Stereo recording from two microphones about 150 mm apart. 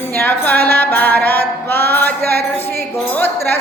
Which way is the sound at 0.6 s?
10° left (ahead or behind).